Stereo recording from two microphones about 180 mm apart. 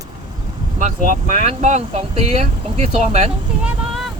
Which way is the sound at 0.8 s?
40° right (ahead or behind).